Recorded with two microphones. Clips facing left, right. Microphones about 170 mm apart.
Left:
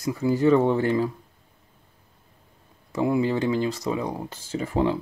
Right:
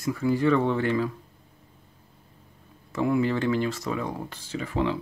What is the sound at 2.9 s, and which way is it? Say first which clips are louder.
Speech: left 1 dB; 20° left (ahead or behind).